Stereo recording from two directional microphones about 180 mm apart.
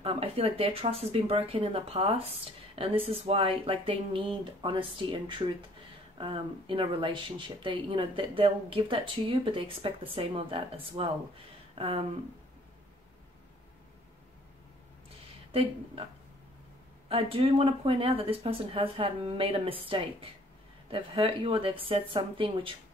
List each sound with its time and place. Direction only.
0.0 s speech: 35° right (ahead or behind)
15.5 s speech: 30° right (ahead or behind)
17.1 s speech: 30° right (ahead or behind)